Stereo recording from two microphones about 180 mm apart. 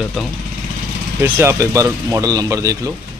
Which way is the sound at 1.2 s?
15° right (ahead or behind).